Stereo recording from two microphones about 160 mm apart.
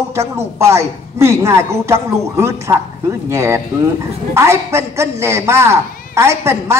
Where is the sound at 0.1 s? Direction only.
15° right (ahead or behind).